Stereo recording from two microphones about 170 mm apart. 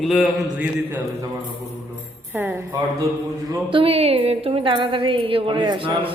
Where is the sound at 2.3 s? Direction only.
15° right (ahead or behind).